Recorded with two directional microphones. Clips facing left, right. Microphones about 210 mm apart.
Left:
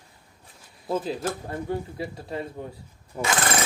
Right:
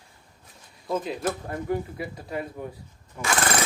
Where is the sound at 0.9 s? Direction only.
30° left (ahead or behind).